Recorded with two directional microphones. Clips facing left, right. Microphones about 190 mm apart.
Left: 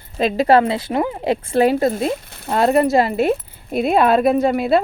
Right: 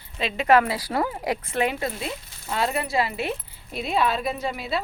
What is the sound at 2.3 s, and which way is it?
Speech, 60° left (ahead or behind).